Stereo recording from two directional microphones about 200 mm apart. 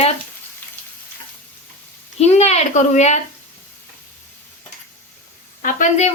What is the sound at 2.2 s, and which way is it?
Speech, 35° left (ahead or behind).